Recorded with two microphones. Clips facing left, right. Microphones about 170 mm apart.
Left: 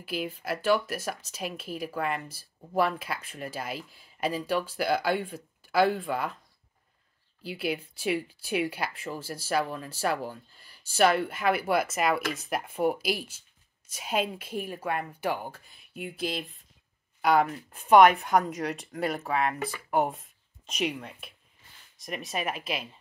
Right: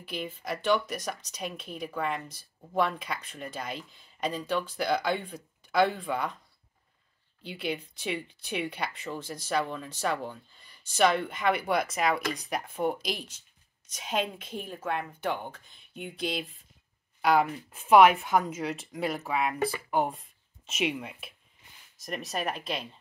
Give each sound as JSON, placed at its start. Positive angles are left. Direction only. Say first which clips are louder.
{"t": 0.0, "sound": "speech", "louder": "left 3 dB", "side_deg": 5}
{"t": 7.4, "sound": "speech", "louder": "left 2 dB", "side_deg": 5}